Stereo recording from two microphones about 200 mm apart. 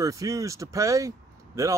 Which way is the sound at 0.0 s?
15° right (ahead or behind).